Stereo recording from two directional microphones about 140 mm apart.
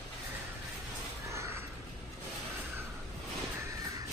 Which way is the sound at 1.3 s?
20° right (ahead or behind).